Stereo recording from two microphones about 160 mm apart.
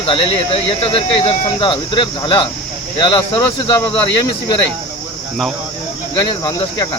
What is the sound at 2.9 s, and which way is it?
Cricket, 30° left (ahead or behind).